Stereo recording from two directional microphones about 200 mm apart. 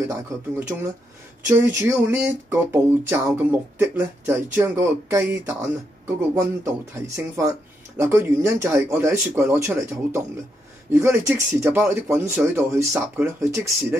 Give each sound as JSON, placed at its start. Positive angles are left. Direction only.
{"t": 0.0, "sound": "speech", "side_deg": -15}